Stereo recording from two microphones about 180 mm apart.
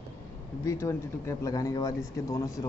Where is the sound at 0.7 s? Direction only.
15° left (ahead or behind).